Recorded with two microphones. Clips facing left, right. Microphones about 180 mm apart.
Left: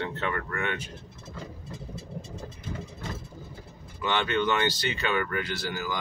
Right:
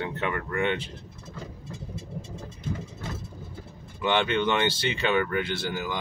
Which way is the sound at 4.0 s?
20° right (ahead or behind).